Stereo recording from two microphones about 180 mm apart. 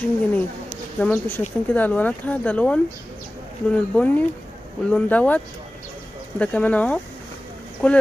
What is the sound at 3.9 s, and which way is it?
Speech, 10° left (ahead or behind).